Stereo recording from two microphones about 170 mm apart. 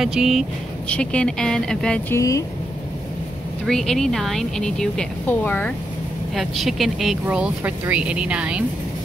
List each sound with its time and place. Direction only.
0.0 s a woman's voice: 5° right (ahead or behind)
2.1 s speech: 20° left (ahead or behind)
3.6 s a woman's voice: 5° left (ahead or behind)
6.3 s a woman's voice: centre (ahead or behind)